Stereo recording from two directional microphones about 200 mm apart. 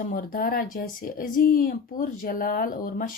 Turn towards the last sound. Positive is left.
turn(degrees=45)  # may be behind; listen again after turning